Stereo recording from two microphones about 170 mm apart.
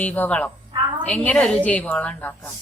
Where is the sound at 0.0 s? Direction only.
10° left (ahead or behind).